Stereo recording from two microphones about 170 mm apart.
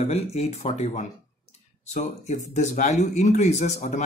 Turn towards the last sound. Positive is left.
turn(degrees=45)  # may be behind; listen again after turning